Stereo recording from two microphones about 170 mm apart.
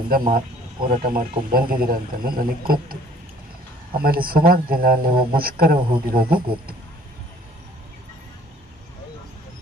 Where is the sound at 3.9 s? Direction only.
60° right (ahead or behind).